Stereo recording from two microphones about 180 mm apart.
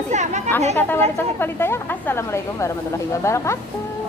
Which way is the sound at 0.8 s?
10° left (ahead or behind).